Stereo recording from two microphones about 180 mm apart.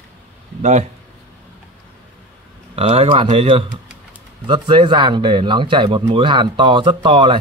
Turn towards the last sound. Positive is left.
turn(degrees=-30)  # may be behind; listen again after turning